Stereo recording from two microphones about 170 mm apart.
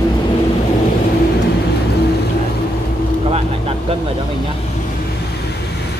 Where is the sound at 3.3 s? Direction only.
35° right (ahead or behind).